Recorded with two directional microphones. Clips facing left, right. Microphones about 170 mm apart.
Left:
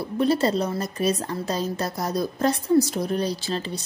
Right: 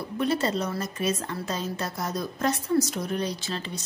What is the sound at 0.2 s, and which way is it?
A woman's voice, 35° left (ahead or behind).